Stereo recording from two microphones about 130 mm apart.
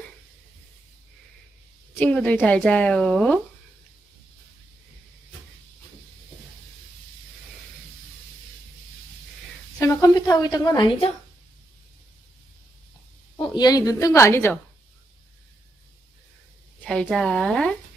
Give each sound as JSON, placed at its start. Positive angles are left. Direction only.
{"t": 2.0, "sound": "a woman's voice", "side_deg": 10}
{"t": 9.8, "sound": "a sound", "side_deg": 25}
{"t": 13.4, "sound": "a woman's voice", "side_deg": 30}
{"t": 16.8, "sound": "speech", "side_deg": 5}